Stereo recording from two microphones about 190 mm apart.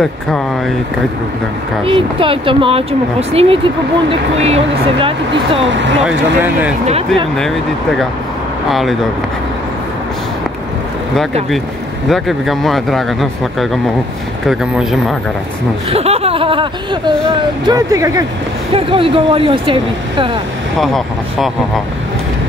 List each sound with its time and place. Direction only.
1.9 s speech: 30° right (ahead or behind)
4.1 s a sound: 35° right (ahead or behind)
5.6 s speech: 70° right (ahead or behind)
6.0 s speech: 10° right (ahead or behind)
8.6 s speech: centre (ahead or behind)
12.1 s speech: centre (ahead or behind)
15.9 s a sound: 30° right (ahead or behind)
17.6 s speech: 20° right (ahead or behind)
18.7 s speech: 30° right (ahead or behind)
20.8 s speech: centre (ahead or behind)